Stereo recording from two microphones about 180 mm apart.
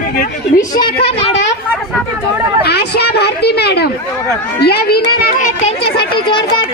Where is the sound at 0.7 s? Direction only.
30° left (ahead or behind).